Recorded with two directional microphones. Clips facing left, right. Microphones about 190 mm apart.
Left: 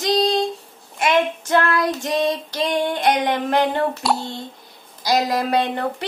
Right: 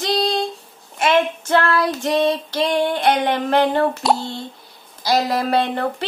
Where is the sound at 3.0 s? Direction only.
15° left (ahead or behind).